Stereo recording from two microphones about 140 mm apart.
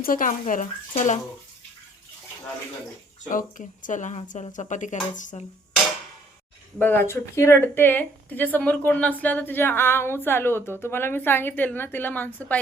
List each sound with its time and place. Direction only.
0.0 s speech: 75° left (ahead or behind); by 1.2 s 60° left (ahead or behind)
3.2 s speech: 70° left (ahead or behind)
6.7 s speech: 15° left (ahead or behind)